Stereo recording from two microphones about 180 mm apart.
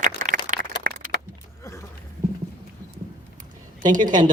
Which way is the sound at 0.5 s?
50° right (ahead or behind).